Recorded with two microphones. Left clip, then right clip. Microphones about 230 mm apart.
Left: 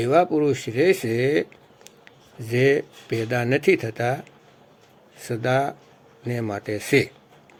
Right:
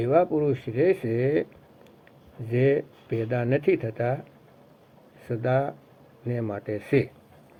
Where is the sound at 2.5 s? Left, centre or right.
Left.